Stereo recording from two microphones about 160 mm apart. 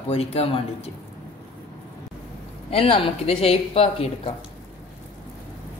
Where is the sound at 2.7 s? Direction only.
35° left (ahead or behind).